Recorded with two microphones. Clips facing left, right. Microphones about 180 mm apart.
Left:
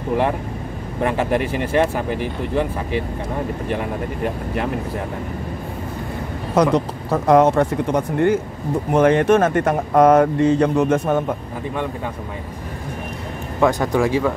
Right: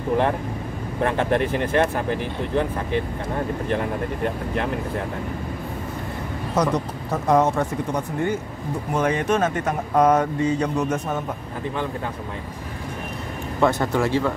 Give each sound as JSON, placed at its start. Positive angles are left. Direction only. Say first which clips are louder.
{"t": 1.0, "sound": "speech", "louder": "left 1 dB", "side_deg": 10}
{"t": 6.5, "sound": "speech", "louder": "left 6 dB", "side_deg": 65}
{"t": 8.9, "sound": "speech", "louder": "left 7 dB", "side_deg": 60}
{"t": 13.6, "sound": "speech", "louder": "left 3 dB", "side_deg": 15}